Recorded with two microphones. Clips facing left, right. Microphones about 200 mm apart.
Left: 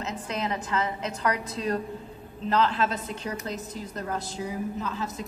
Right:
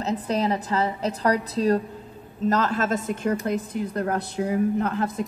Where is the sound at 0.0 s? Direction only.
35° right (ahead or behind).